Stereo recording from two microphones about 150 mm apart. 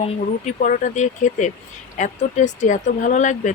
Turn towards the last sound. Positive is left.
turn(degrees=55)  # may be behind; listen again after turning